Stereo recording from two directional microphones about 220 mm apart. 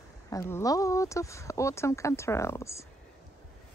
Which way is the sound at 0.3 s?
15° left (ahead or behind).